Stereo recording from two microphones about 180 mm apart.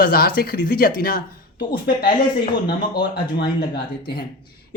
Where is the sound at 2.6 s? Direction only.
60° left (ahead or behind).